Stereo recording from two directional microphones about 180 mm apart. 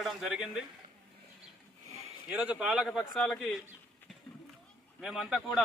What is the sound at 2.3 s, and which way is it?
A man's voice, 10° right (ahead or behind).